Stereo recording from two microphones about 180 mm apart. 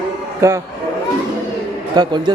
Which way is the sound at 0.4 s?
15° right (ahead or behind).